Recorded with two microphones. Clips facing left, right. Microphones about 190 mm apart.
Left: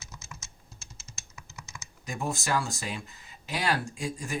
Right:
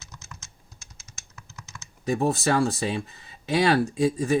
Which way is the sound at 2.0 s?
65° right (ahead or behind).